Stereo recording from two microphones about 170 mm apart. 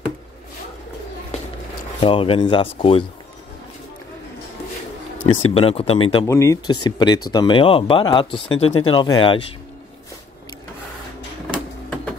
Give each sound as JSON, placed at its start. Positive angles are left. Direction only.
{"t": 2.0, "sound": "speech", "side_deg": 30}
{"t": 5.2, "sound": "speech", "side_deg": 35}
{"t": 6.2, "sound": "speech", "side_deg": 15}